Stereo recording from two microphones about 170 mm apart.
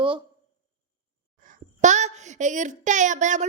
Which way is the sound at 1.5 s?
45° right (ahead or behind).